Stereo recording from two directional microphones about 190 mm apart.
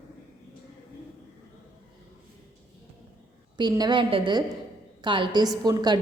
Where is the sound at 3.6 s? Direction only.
20° right (ahead or behind).